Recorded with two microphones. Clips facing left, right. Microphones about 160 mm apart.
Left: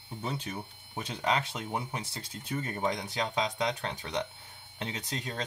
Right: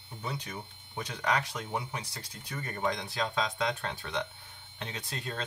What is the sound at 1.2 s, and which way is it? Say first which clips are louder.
Speech: left 1 dB; 25° left (ahead or behind).